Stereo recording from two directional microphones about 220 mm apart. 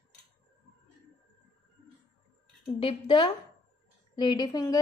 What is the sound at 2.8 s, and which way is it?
A woman's voice, 25° left (ahead or behind).